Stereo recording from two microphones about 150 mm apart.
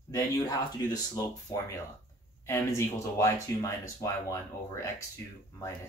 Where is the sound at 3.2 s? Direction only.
20° left (ahead or behind).